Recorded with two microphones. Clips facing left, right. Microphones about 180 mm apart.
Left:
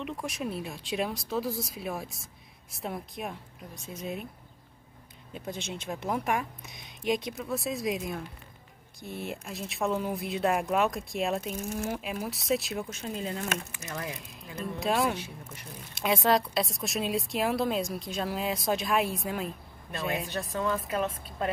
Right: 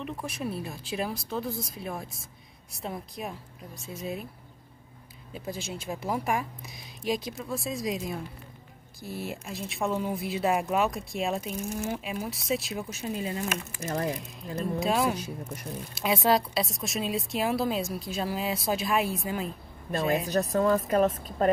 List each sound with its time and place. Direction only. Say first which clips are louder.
0.0 s speech: even; centre (ahead or behind)
5.3 s speech: right 1 dB; 5° right (ahead or behind)
13.7 s speech: right 7 dB; 35° right (ahead or behind)
14.8 s speech: right 1 dB; centre (ahead or behind)
15.1 s speech: right 5 dB; 40° right (ahead or behind)
15.9 s speech: right 1 dB; centre (ahead or behind)
20.2 s a woman's voice: right 7 dB; 40° right (ahead or behind)